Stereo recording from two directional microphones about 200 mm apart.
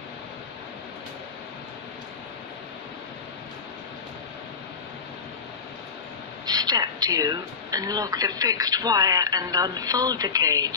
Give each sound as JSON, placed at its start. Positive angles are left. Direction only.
{"t": 6.4, "sound": "speech", "side_deg": -20}